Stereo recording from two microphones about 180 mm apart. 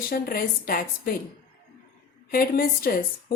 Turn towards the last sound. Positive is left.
turn(degrees=55)  # may be behind; listen again after turning